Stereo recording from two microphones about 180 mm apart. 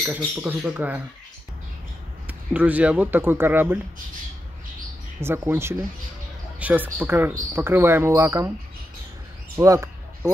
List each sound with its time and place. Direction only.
0.4 s speech: 10° right (ahead or behind)
2.2 s speech: 10° right (ahead or behind)
5.2 s speech: 10° right (ahead or behind)
9.6 s a sound: 15° right (ahead or behind)